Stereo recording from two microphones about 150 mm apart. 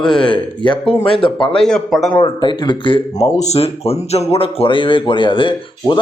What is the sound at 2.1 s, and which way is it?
A man's voice, 30° left (ahead or behind).